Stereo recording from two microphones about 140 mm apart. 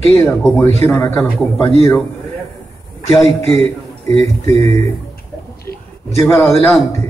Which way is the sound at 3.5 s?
50° right (ahead or behind).